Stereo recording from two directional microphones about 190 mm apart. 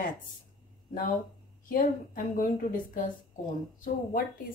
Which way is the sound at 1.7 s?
45° left (ahead or behind).